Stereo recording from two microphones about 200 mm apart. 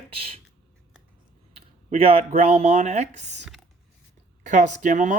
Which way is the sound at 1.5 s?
30° right (ahead or behind).